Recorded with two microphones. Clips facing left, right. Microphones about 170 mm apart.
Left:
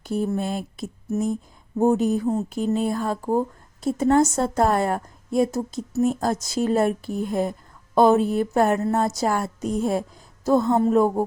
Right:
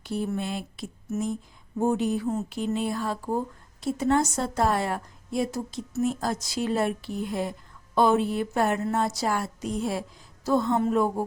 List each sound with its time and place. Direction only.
0.0 s speech: 45° left (ahead or behind)